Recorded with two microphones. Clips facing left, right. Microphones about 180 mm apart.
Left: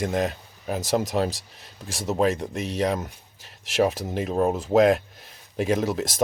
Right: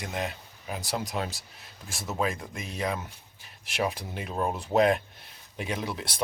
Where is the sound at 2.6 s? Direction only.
70° left (ahead or behind).